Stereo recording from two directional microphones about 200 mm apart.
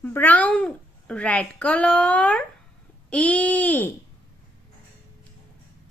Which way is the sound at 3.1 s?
5° left (ahead or behind).